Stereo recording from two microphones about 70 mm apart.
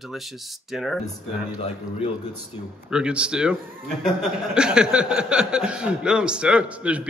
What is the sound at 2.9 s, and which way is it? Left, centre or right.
Speech, centre.